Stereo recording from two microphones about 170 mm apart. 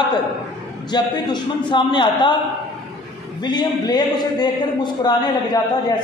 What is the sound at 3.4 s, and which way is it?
A man's voice, 25° left (ahead or behind).